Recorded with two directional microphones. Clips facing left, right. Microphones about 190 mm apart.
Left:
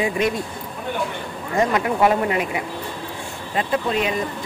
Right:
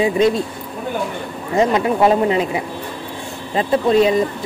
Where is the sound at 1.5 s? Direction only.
25° right (ahead or behind).